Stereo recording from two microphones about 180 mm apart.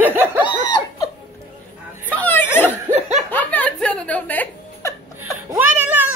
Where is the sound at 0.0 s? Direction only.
15° right (ahead or behind).